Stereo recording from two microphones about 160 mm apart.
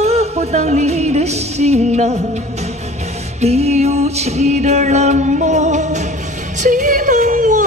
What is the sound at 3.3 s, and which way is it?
Music, 40° right (ahead or behind).